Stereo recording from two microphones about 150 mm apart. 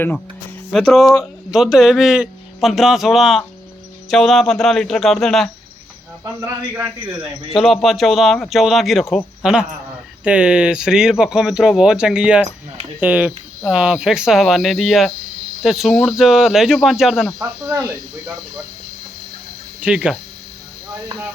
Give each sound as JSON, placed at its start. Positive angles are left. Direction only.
{"t": 0.7, "sound": "speech", "side_deg": 5}
{"t": 6.4, "sound": "a man's voice", "side_deg": -15}
{"t": 7.5, "sound": "a man's voice", "side_deg": 0}
{"t": 17.4, "sound": "speech", "side_deg": -20}
{"t": 19.8, "sound": "a man's voice", "side_deg": -5}